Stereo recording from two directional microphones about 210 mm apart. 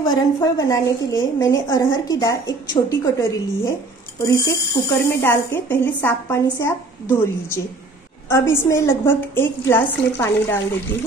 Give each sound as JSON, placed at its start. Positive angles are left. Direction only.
{"t": 0.1, "sound": "a woman's voice", "side_deg": 15}